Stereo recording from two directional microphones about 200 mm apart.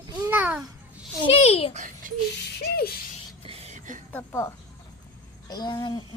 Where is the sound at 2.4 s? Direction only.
55° left (ahead or behind).